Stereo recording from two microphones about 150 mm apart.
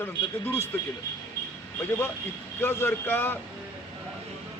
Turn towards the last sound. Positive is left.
turn(degrees=15)  # may be behind; listen again after turning